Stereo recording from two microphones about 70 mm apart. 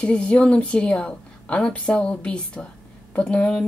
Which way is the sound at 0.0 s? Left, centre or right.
Centre.